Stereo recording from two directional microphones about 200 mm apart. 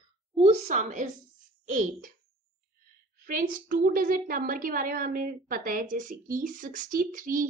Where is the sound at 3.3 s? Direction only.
45° right (ahead or behind).